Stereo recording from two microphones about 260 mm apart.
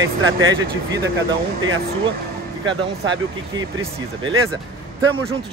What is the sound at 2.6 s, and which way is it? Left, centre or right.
Speech, centre.